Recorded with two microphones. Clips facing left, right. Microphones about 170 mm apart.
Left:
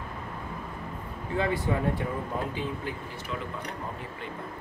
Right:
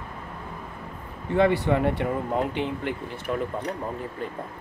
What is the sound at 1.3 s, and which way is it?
Speech, 70° right (ahead or behind).